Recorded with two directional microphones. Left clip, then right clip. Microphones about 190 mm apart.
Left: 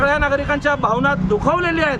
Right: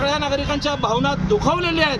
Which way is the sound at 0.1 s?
35° left (ahead or behind).